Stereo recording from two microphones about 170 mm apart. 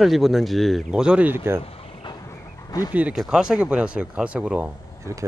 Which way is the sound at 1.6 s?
35° left (ahead or behind).